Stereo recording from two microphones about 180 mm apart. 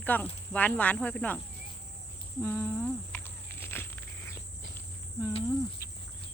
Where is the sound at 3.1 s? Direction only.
10° left (ahead or behind).